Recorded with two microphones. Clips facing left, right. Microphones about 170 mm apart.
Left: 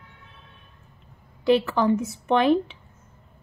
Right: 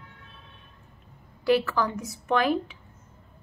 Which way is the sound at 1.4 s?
25° left (ahead or behind).